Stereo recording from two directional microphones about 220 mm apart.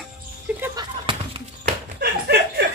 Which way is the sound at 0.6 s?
20° right (ahead or behind).